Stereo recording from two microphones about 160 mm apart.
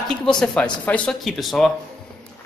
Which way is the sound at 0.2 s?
5° left (ahead or behind).